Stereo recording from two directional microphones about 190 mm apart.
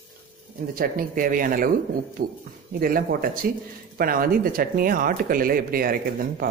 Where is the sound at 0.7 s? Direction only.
50° right (ahead or behind).